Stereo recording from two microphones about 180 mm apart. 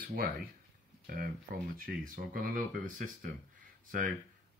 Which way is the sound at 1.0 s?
55° right (ahead or behind).